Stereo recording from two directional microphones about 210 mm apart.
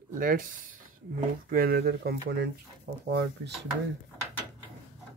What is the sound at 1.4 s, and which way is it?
Speech, 45° right (ahead or behind).